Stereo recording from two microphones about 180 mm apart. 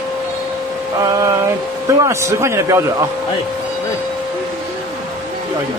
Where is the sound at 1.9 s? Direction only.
15° right (ahead or behind).